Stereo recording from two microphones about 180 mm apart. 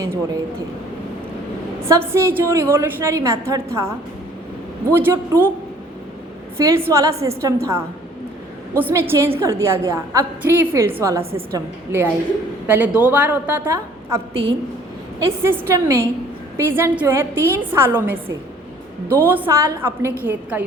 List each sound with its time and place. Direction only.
1.9 s a woman's voice: 15° right (ahead or behind)
6.6 s a woman's voice: 15° right (ahead or behind)
11.2 s a woman's voice: 30° right (ahead or behind)
11.5 s a woman's voice: 15° right (ahead or behind)
15.2 s a woman's voice: 10° right (ahead or behind)